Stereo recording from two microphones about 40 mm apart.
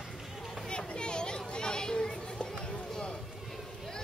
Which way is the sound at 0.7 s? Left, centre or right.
Left.